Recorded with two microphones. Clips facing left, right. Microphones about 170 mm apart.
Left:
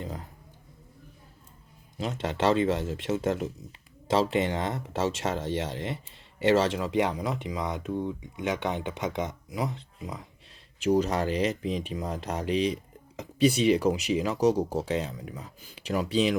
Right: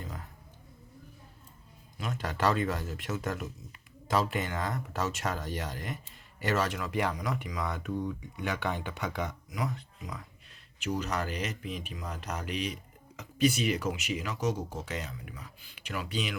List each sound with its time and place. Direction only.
0.0 s a sound: 30° left (ahead or behind)
2.0 s speech: 25° left (ahead or behind)
10.8 s speech: 35° left (ahead or behind)